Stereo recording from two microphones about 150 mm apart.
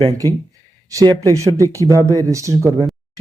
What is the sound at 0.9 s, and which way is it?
Speech, 20° right (ahead or behind).